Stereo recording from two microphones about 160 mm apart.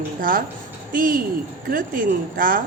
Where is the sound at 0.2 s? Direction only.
60° right (ahead or behind).